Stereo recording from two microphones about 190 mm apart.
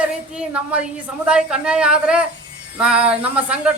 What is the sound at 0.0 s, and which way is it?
A woman's voice, 5° right (ahead or behind).